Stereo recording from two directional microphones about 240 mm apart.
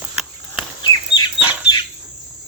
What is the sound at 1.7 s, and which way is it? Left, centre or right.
Bird, centre.